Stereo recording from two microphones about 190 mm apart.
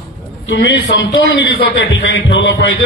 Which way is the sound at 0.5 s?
65° left (ahead or behind).